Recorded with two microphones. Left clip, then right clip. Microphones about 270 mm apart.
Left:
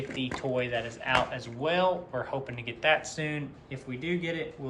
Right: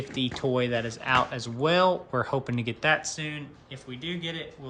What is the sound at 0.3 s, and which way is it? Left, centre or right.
Speech, right.